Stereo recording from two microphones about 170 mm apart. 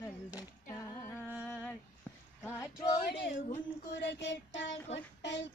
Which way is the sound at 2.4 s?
20° left (ahead or behind).